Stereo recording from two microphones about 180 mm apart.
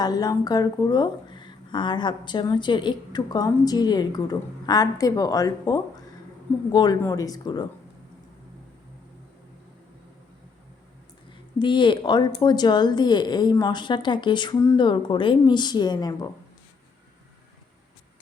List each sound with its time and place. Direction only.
0.0 s speech: 20° left (ahead or behind)
11.6 s speech: 25° left (ahead or behind)